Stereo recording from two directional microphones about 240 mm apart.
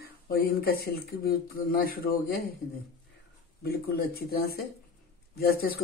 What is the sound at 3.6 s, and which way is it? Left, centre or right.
Speech, left.